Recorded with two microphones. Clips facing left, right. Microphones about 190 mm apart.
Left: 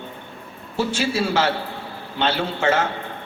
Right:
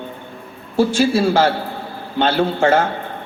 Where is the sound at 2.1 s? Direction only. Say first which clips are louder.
Right 6 dB; 40° right (ahead or behind).